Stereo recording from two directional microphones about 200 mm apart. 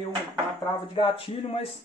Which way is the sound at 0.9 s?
25° left (ahead or behind).